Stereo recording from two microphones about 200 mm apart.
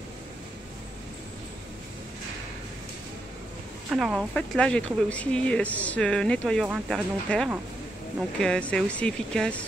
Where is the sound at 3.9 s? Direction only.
Centre (ahead or behind).